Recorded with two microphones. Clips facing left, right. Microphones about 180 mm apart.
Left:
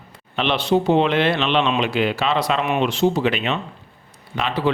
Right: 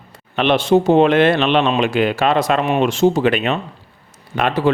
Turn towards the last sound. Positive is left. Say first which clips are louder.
# right 5 dB
turn(degrees=-50)  # may be behind; listen again after turning